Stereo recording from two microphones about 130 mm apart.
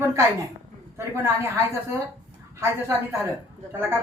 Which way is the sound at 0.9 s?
20° right (ahead or behind).